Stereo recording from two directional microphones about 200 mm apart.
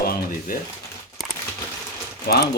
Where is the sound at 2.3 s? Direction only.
50° left (ahead or behind).